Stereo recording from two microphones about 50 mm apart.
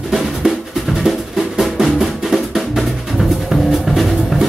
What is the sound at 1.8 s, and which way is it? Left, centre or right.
Music, centre.